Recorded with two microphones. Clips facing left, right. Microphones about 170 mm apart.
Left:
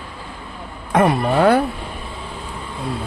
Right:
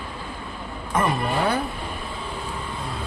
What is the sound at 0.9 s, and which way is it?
Speech, 70° left (ahead or behind).